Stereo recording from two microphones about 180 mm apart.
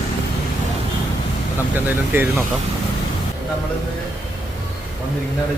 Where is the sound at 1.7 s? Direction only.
10° right (ahead or behind).